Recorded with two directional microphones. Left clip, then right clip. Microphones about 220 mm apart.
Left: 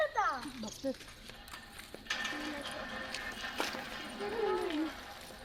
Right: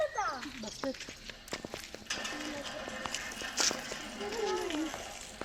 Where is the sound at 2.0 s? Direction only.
30° right (ahead or behind).